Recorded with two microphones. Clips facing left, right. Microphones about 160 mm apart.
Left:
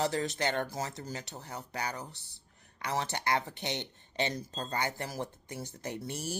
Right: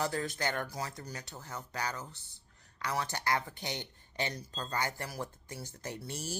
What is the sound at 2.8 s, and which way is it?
Speech, 20° left (ahead or behind).